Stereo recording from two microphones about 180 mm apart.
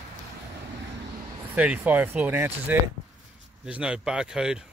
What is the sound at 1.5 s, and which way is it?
Speech, 10° right (ahead or behind).